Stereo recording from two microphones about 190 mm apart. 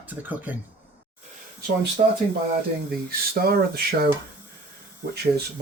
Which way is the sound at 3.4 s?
55° right (ahead or behind).